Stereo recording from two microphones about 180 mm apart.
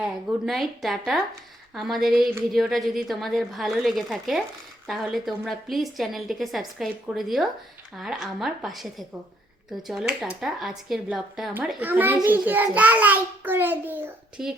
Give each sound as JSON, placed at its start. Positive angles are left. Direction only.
{"t": 0.0, "sound": "a woman's voice", "side_deg": 0}